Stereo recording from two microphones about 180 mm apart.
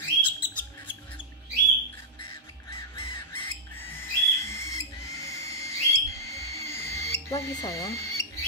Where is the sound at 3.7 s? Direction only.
10° left (ahead or behind).